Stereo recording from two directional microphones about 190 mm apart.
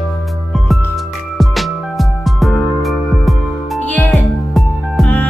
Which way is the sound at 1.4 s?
Centre (ahead or behind).